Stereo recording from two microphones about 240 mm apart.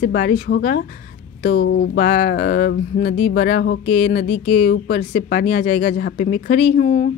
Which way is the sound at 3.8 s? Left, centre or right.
Left.